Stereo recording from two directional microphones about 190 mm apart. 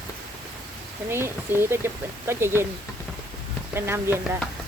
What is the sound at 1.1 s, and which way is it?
Speech, 15° right (ahead or behind).